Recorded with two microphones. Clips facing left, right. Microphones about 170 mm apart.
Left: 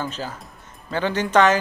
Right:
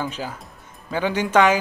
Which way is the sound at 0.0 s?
10° right (ahead or behind).